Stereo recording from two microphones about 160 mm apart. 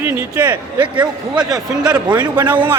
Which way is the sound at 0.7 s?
30° right (ahead or behind).